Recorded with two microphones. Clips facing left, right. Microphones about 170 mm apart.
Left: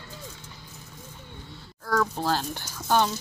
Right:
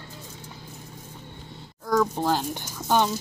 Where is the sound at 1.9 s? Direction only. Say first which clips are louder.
Right 3 dB; 15° right (ahead or behind).